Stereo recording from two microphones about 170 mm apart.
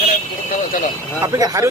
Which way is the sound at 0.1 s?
55° left (ahead or behind).